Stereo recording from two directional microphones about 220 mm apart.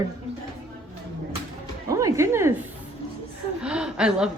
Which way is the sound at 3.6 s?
5° right (ahead or behind).